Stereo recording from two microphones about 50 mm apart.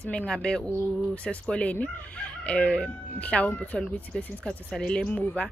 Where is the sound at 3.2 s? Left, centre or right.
Left.